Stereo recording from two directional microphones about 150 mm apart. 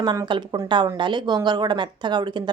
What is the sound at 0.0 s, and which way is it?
A woman's voice, 30° right (ahead or behind).